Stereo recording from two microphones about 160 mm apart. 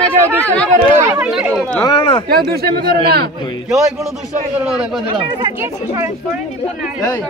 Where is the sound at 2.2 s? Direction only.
75° right (ahead or behind).